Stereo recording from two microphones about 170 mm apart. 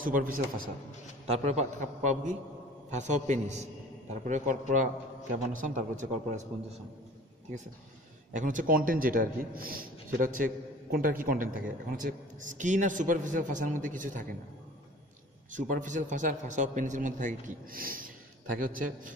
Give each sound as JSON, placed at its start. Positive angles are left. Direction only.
{"t": 0.0, "sound": "a man's voice", "side_deg": -55}
{"t": 1.3, "sound": "a man's voice", "side_deg": -40}
{"t": 8.4, "sound": "a man's voice", "side_deg": -50}
{"t": 15.5, "sound": "a man's voice", "side_deg": -50}